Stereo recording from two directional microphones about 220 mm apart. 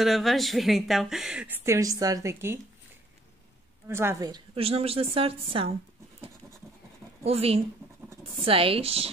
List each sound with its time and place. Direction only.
0.0 s speech: centre (ahead or behind)
3.9 s a woman's voice: 10° right (ahead or behind)
7.2 s a woman's voice: 25° right (ahead or behind)